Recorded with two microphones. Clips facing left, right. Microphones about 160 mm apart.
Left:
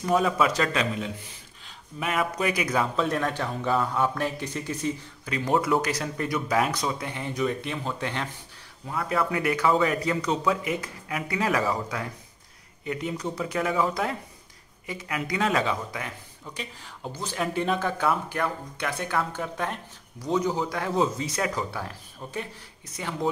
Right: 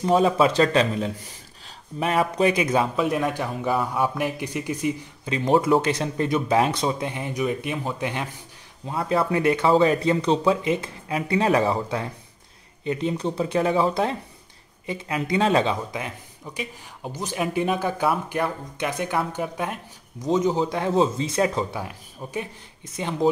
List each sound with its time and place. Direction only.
0.0 s speech: 25° right (ahead or behind)
3.0 s speech: 10° right (ahead or behind)
8.8 s speech: 30° right (ahead or behind)